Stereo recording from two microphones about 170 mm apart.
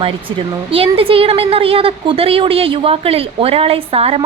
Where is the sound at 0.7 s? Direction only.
35° right (ahead or behind).